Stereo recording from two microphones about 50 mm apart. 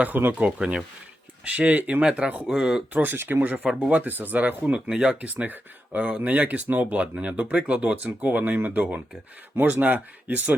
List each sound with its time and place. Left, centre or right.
0.3 s speech: right
2.9 s speech: right
3.2 s speech: right
3.4 s speech: right
3.7 s speech: centre
3.9 s speech: right
4.9 s speech: centre
5.3 s speech: right